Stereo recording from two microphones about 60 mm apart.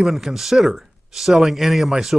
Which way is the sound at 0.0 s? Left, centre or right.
Centre.